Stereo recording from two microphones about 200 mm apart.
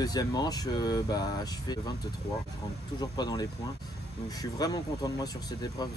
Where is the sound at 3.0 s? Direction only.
20° left (ahead or behind).